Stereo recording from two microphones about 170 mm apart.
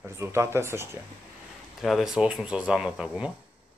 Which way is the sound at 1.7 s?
Centre (ahead or behind).